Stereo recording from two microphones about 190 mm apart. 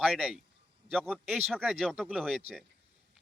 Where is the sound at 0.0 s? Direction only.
5° right (ahead or behind).